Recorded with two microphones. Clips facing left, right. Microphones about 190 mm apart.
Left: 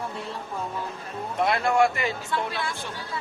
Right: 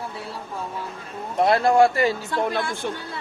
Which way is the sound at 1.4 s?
35° right (ahead or behind).